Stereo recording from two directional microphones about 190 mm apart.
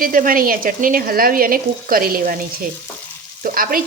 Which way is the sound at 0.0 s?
45° right (ahead or behind).